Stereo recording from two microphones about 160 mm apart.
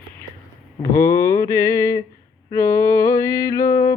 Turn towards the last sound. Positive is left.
turn(degrees=20)  # may be behind; listen again after turning